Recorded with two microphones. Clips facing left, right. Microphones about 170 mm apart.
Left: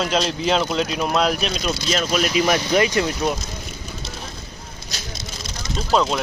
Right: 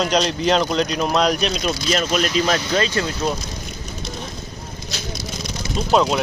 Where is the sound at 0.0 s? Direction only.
5° left (ahead or behind); by 3.2 s 20° left (ahead or behind).